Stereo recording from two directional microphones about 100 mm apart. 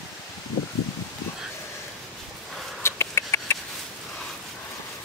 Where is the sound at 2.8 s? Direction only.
25° left (ahead or behind).